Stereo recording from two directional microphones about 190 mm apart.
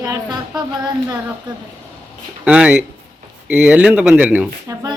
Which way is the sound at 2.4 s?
5° right (ahead or behind).